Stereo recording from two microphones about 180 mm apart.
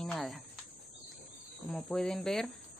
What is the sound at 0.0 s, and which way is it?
Cricket, centre (ahead or behind).